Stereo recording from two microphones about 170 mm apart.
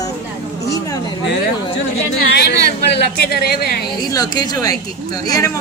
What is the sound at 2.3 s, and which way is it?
Speech, 80° left.